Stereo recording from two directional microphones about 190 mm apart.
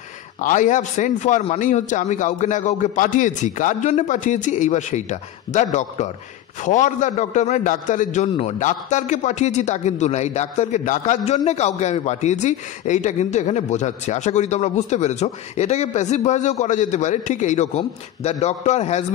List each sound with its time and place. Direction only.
0.4 s a man's voice: 40° left (ahead or behind)